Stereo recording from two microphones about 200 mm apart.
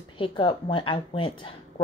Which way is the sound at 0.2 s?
25° left (ahead or behind).